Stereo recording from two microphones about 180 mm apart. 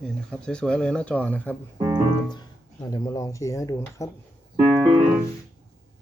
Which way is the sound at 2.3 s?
25° left (ahead or behind).